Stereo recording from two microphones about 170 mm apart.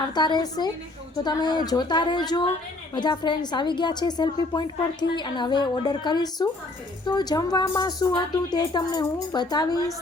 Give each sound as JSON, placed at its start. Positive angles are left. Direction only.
{"t": 0.1, "sound": "speech", "side_deg": 25}